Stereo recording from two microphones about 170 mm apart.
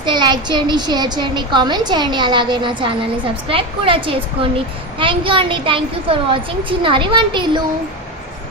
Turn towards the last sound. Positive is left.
turn(degrees=-25)  # may be behind; listen again after turning